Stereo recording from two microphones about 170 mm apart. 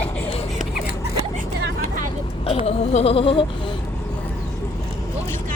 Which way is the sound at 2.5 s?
35° left (ahead or behind).